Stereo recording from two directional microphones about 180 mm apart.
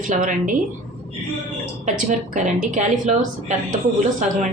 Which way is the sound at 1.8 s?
45° right (ahead or behind).